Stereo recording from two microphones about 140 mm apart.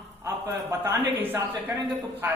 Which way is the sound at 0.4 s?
20° right (ahead or behind).